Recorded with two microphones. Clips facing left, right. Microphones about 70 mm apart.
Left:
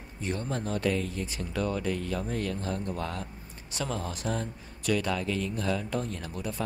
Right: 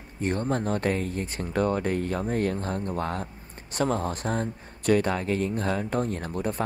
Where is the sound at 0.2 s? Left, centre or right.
Right.